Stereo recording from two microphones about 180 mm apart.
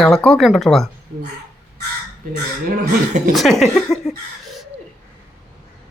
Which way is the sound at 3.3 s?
Centre (ahead or behind).